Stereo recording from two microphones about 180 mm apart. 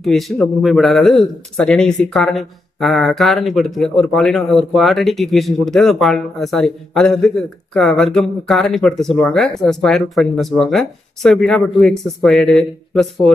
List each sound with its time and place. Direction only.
0.0 s a man's voice: centre (ahead or behind)